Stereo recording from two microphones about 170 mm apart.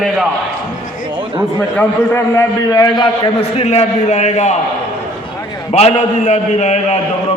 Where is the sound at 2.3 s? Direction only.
20° left (ahead or behind).